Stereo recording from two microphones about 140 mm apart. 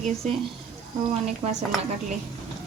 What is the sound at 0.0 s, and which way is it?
Speech, 45° right (ahead or behind).